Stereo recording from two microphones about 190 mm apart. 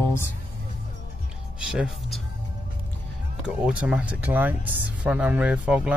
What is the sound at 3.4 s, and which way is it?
Speech, 5° right (ahead or behind).